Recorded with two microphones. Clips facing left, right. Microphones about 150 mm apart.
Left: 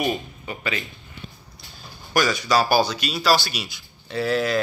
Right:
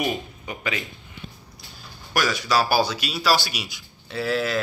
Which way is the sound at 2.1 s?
5° right (ahead or behind).